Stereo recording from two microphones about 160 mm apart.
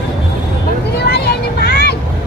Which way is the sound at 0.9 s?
90° left.